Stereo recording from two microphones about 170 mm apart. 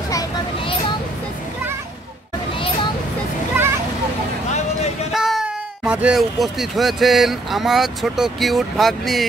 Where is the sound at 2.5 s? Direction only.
30° left (ahead or behind).